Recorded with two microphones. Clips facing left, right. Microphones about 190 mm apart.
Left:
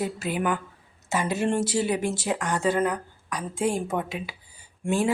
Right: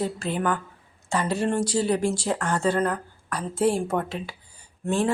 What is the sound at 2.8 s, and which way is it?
Speech, 15° left (ahead or behind).